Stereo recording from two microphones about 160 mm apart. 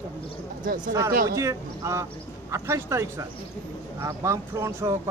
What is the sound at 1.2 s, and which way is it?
A man's voice, 20° right (ahead or behind).